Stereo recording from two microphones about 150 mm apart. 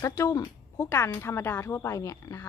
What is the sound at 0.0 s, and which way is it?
Speech, 20° left (ahead or behind).